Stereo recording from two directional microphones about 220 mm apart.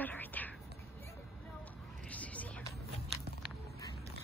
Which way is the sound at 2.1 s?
5° left (ahead or behind).